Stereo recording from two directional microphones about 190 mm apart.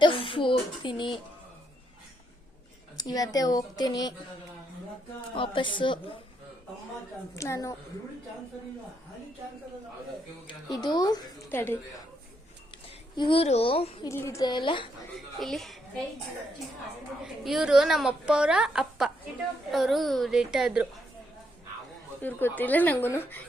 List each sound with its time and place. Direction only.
0.0 s speech: 25° left (ahead or behind)
3.0 s speech: 20° left (ahead or behind)
5.3 s speech: 25° left (ahead or behind)
7.3 s a woman's voice: 15° left (ahead or behind)
10.4 s speech: 20° left (ahead or behind)
11.4 s a woman's voice: 10° left (ahead or behind)
13.1 s speech: 25° left (ahead or behind)
14.1 s speech: 15° left (ahead or behind)
15.4 s a woman's voice: centre (ahead or behind)
17.2 s a woman's voice: centre (ahead or behind)
22.2 s a woman's voice: 10° left (ahead or behind)